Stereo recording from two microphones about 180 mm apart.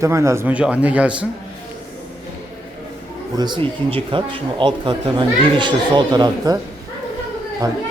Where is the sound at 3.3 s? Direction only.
25° right (ahead or behind).